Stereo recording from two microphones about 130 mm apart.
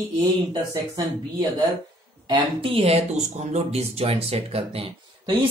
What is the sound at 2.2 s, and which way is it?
Speech, 45° right (ahead or behind).